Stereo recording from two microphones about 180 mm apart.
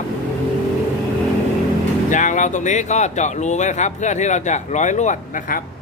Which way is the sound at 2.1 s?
45° left (ahead or behind).